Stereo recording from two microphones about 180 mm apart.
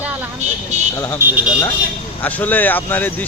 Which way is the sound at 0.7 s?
40° right (ahead or behind).